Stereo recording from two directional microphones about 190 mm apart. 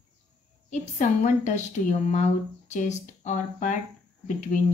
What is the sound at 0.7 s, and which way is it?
A woman's voice, 40° left (ahead or behind).